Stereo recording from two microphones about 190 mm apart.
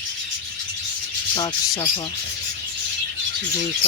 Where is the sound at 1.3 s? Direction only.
20° left (ahead or behind).